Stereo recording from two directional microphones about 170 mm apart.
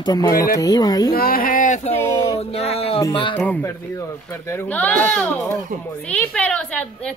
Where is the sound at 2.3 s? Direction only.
35° left (ahead or behind).